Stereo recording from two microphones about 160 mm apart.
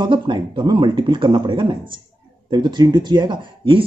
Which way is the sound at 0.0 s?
30° right (ahead or behind).